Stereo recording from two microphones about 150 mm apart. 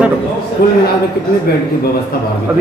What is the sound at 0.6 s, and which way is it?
Speech, 90° left.